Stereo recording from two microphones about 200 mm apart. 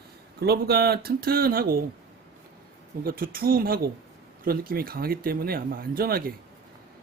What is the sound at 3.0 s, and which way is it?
Speech, 45° right (ahead or behind).